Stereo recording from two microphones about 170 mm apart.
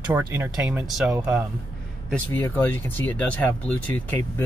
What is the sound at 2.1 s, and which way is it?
Speech, 10° left (ahead or behind).